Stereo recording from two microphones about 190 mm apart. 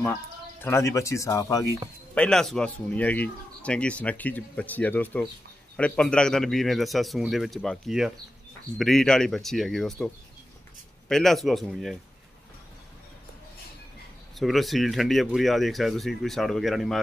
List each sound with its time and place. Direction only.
0.0 s speech: 10° left (ahead or behind)
2.1 s speech: 5° left (ahead or behind)
14.3 s speech: centre (ahead or behind)